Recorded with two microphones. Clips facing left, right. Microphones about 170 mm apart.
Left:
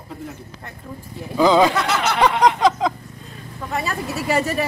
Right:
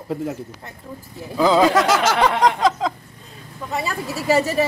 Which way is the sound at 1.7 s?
90° right.